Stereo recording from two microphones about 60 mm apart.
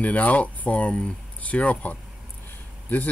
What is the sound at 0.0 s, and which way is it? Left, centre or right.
Speech, left.